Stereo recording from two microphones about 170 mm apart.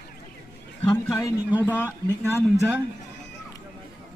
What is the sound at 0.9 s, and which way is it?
Speech, 20° left (ahead or behind).